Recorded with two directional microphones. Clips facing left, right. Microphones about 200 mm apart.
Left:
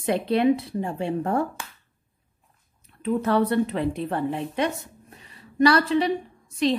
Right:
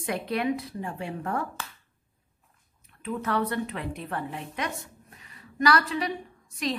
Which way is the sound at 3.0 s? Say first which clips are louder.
Left 7 dB; 30° left (ahead or behind).